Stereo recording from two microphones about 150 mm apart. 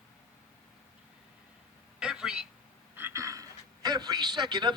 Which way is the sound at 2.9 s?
15° right (ahead or behind).